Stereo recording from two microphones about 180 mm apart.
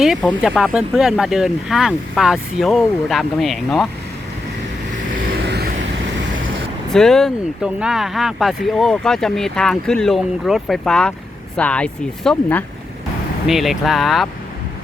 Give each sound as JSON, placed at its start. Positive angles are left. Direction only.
{"t": 0.0, "sound": "speech", "side_deg": -5}
{"t": 5.4, "sound": "vehicle", "side_deg": -65}
{"t": 6.9, "sound": "speech", "side_deg": 0}